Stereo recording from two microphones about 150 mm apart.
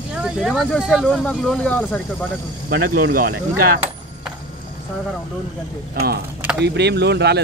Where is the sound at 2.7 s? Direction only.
75° right (ahead or behind).